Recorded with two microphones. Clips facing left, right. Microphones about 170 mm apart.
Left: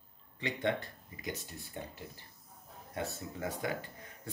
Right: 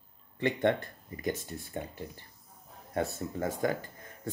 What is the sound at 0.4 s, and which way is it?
Speech, 50° right (ahead or behind).